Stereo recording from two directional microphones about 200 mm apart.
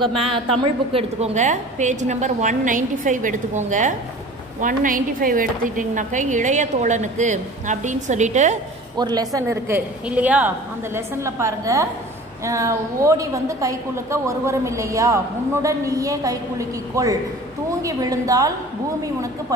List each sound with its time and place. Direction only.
0.0 s a woman's voice: 30° right (ahead or behind)
8.9 s a woman's voice: 20° right (ahead or behind)